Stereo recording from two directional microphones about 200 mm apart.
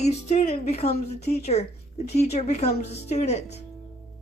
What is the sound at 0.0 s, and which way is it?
Speech, 35° left (ahead or behind).